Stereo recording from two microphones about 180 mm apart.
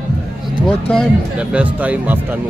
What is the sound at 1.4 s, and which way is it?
A man's voice, 5° right (ahead or behind).